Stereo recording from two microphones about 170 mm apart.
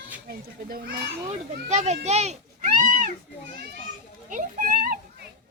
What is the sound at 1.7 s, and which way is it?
Meow, 40° right (ahead or behind).